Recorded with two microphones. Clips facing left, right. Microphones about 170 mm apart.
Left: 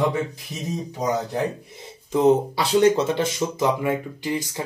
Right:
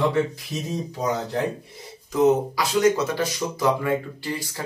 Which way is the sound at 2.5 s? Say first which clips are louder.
Left 2 dB; 30° left (ahead or behind).